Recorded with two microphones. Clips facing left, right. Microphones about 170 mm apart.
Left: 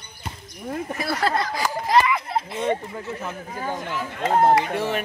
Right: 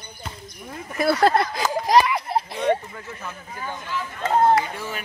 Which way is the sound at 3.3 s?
40° left (ahead or behind).